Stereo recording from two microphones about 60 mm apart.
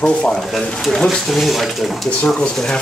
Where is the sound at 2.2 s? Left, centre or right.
Centre.